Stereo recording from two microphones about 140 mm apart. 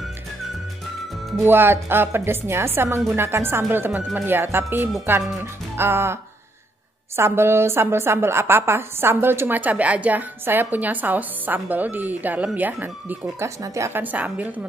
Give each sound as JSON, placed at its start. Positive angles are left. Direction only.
{"t": 1.4, "sound": "a woman's voice", "side_deg": -15}
{"t": 7.2, "sound": "a woman's voice", "side_deg": -15}